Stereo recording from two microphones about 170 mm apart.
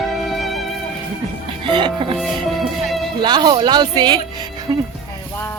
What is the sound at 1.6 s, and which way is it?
Music, 30° right (ahead or behind).